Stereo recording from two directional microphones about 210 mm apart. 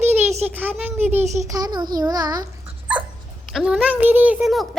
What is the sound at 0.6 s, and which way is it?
A child's voice, 10° right (ahead or behind).